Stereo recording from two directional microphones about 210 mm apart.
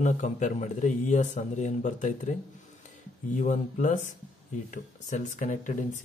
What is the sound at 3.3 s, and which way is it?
Speech, 35° left (ahead or behind).